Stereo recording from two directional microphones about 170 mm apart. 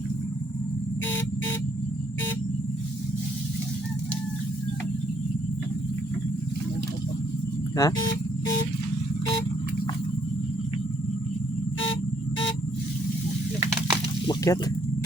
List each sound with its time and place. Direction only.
7.8 s speech: 20° left (ahead or behind)
14.3 s snake: 20° left (ahead or behind)